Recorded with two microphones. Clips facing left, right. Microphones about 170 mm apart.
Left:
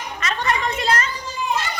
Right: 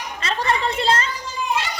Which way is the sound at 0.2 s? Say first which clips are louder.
Right 1 dB; 30° right (ahead or behind).